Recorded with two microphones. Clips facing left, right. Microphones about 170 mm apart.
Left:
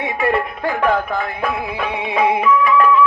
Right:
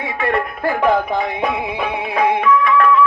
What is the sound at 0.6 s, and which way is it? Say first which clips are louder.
Music: right 4 dB; 10° right (ahead or behind).